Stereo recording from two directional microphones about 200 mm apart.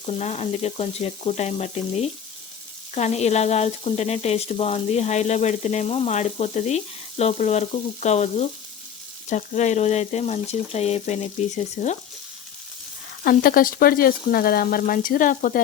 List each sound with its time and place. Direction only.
0.0 s sizzle: 35° left (ahead or behind)
13.2 s speech: 45° left (ahead or behind)